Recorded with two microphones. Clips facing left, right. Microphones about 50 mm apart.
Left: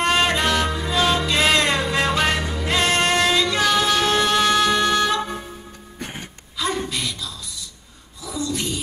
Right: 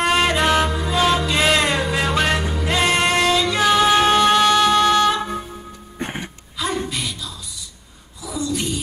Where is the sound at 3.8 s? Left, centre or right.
Right.